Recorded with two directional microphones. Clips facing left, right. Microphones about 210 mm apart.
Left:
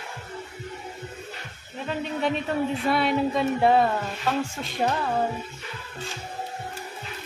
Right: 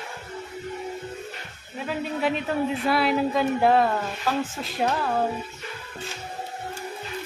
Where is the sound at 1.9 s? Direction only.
5° right (ahead or behind).